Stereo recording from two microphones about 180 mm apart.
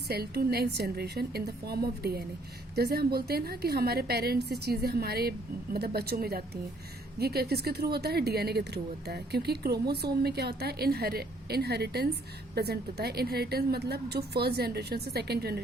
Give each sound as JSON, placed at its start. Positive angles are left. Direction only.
{"t": 0.1, "sound": "a woman's voice", "side_deg": -60}